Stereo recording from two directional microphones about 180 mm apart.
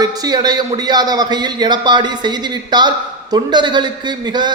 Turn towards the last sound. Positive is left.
turn(degrees=-25)  # may be behind; listen again after turning